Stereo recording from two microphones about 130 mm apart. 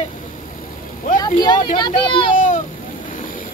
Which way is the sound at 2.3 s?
85° left.